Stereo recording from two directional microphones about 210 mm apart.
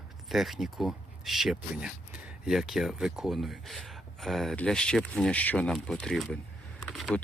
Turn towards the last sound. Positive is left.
turn(degrees=0)  # may be behind; listen again after turning